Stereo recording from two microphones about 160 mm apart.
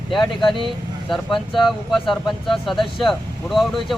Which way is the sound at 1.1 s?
Centre (ahead or behind).